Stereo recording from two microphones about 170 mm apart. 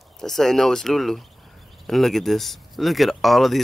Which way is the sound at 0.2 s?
Centre (ahead or behind).